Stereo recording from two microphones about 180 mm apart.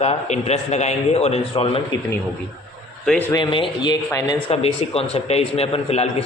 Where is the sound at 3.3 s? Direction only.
25° left (ahead or behind).